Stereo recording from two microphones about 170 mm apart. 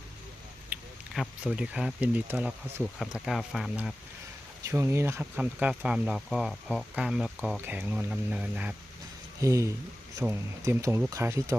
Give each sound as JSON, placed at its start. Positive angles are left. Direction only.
{"t": 0.7, "sound": "speech", "side_deg": -5}
{"t": 4.7, "sound": "speech", "side_deg": -15}